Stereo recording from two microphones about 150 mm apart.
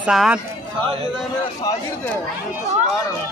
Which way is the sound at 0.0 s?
5° right (ahead or behind).